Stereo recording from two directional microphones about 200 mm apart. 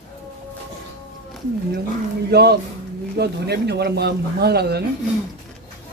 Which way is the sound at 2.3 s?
55° right (ahead or behind).